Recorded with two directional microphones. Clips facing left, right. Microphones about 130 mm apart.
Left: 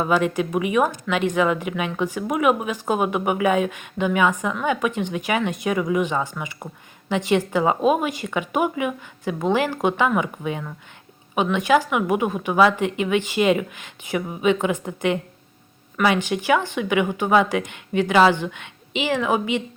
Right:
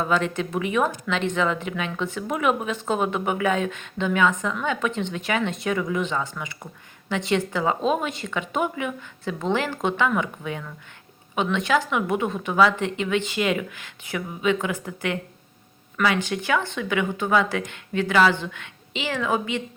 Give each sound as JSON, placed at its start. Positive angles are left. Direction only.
{"t": 0.0, "sound": "speech", "side_deg": 10}